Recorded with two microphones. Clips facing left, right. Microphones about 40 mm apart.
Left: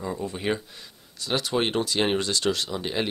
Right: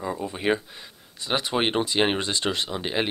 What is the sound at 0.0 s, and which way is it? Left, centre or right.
Speech, centre.